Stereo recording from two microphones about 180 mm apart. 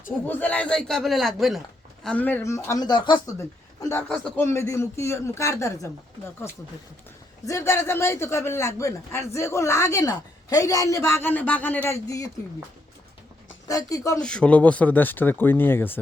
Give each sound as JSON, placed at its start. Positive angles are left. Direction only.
{"t": 0.3, "sound": "a man's voice", "side_deg": 10}
{"t": 13.7, "sound": "speech", "side_deg": 20}
{"t": 14.2, "sound": "speech", "side_deg": 5}